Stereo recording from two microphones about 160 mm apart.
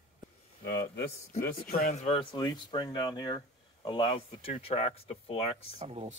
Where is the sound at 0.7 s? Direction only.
90° left.